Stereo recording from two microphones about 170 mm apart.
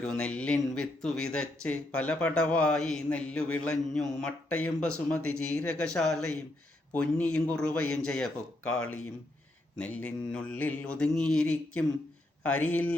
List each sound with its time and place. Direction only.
0.1 s speech: 5° left (ahead or behind)
9.7 s mantra: 10° left (ahead or behind)